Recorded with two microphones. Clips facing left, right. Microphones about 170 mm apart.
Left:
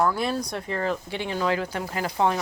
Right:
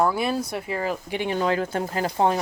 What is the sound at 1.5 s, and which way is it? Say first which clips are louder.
Speech: right 3 dB; 45° right (ahead or behind).